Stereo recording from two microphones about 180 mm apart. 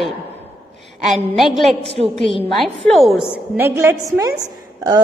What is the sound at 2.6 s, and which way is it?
A woman's voice, centre (ahead or behind).